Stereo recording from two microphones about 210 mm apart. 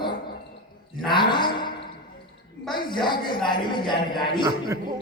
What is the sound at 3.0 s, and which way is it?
A man's voice, 20° left (ahead or behind).